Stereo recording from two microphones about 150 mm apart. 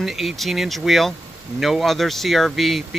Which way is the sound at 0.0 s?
Centre (ahead or behind).